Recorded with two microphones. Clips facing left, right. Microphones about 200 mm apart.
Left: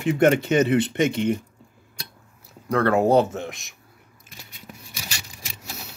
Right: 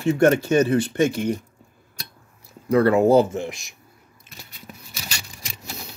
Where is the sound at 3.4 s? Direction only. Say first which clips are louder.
Right 2 dB; centre (ahead or behind).